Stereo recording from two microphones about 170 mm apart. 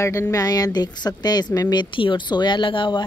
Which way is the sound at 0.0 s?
15° left (ahead or behind).